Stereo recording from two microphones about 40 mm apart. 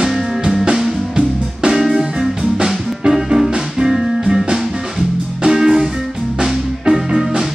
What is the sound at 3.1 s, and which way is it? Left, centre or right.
Music, centre.